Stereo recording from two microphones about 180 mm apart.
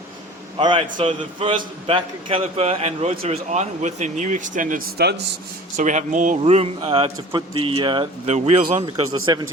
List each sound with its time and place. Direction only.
0.6 s a man's voice: 25° right (ahead or behind)
8.3 s a man's voice: 40° right (ahead or behind)
9.0 s speech: 25° right (ahead or behind)